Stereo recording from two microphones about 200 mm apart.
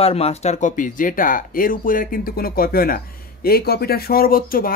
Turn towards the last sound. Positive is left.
turn(degrees=45)  # may be behind; listen again after turning